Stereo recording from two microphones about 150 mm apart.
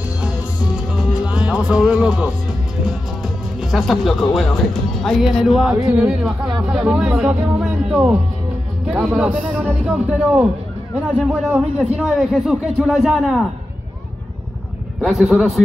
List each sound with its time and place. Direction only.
1.2 s speech: 5° right (ahead or behind)
3.7 s a man's voice: centre (ahead or behind)
7.3 s speech: 20° right (ahead or behind)
7.6 s a man's voice: centre (ahead or behind)
15.0 s a man's voice: centre (ahead or behind)